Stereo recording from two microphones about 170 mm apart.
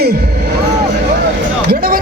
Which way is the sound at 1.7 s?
60° right (ahead or behind).